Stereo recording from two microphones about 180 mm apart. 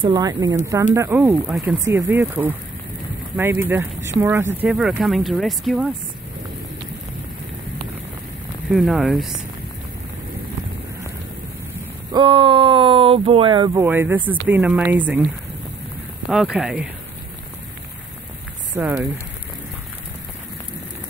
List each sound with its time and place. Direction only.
0.0 s speech: 20° right (ahead or behind); by 5.9 s centre (ahead or behind)
8.7 s speech: centre (ahead or behind)
12.1 s speech: 25° right (ahead or behind)
13.8 s speech: 10° right (ahead or behind)
16.3 s speech: 5° right (ahead or behind)
18.8 s speech: 10° right (ahead or behind)